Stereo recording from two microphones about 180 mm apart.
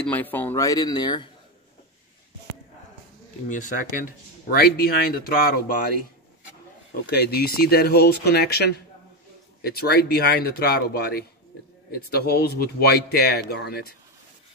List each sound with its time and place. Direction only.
0.0 s speech: 10° left (ahead or behind); by 1.3 s 25° left (ahead or behind)
3.4 s speech: 45° left (ahead or behind)
6.9 s speech: 60° left (ahead or behind)